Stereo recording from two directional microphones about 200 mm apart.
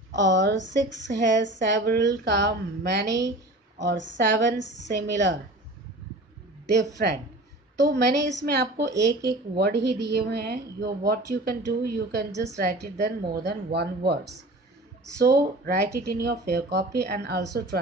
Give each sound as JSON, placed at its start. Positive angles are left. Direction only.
{"t": 0.1, "sound": "a woman's voice", "side_deg": -60}
{"t": 7.0, "sound": "a woman's voice", "side_deg": -45}
{"t": 7.8, "sound": "a woman's voice", "side_deg": -60}